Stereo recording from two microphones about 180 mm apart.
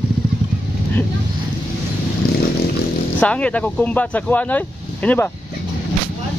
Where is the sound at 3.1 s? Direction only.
5° left (ahead or behind).